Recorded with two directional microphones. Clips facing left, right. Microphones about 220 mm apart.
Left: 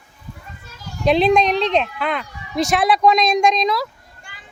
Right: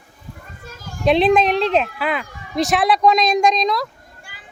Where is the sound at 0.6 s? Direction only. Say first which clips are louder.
Even; 50° right (ahead or behind).